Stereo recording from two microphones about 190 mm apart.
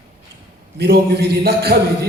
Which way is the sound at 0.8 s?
55° right (ahead or behind).